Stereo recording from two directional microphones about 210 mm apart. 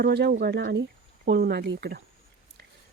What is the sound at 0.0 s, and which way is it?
Speech, 50° right (ahead or behind).